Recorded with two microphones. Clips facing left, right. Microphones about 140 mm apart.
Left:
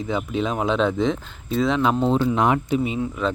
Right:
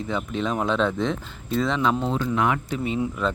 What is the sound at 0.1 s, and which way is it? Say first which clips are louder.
Speech: left 2 dB; 5° left (ahead or behind).